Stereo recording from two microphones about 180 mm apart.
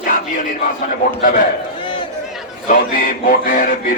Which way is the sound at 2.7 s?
50° left (ahead or behind).